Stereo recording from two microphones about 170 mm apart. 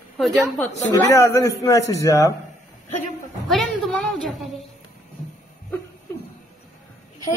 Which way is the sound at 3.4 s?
Centre (ahead or behind).